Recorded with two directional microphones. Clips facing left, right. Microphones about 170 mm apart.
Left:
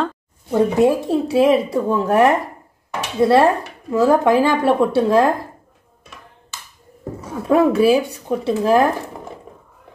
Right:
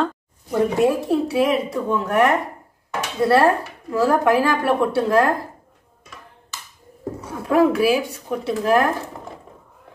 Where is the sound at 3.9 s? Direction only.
20° left (ahead or behind).